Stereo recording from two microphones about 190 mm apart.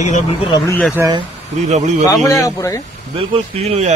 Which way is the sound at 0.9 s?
20° right (ahead or behind).